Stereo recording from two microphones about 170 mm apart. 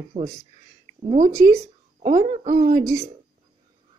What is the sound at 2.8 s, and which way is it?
Speech, 20° right (ahead or behind).